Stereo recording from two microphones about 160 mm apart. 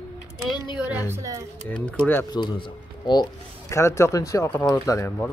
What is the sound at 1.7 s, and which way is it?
Speech, 5° left (ahead or behind).